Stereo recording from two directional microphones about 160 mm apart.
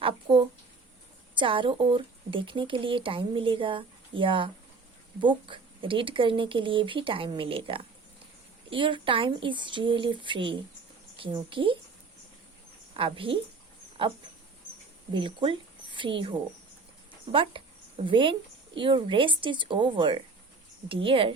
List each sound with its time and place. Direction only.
0.0 s a sound: 35° right (ahead or behind)
1.4 s speech: 30° right (ahead or behind)
13.0 s speech: 35° right (ahead or behind)
15.1 s a woman's voice: 30° right (ahead or behind)
17.3 s a woman's voice: 35° right (ahead or behind)